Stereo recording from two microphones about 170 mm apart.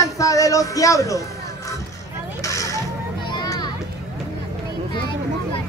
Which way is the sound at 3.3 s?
25° left (ahead or behind).